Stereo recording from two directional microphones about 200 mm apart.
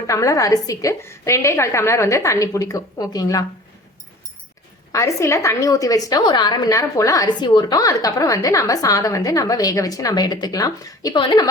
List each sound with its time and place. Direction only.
0.1 s a woman's voice: 15° left (ahead or behind)
4.9 s a woman's voice: 15° left (ahead or behind)